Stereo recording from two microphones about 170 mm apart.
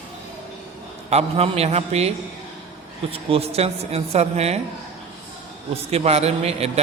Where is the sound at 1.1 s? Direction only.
40° right (ahead or behind).